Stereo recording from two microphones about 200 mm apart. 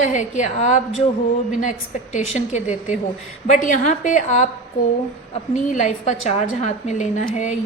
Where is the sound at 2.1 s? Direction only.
35° left (ahead or behind).